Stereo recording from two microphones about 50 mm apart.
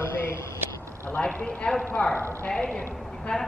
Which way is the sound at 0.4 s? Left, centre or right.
Left.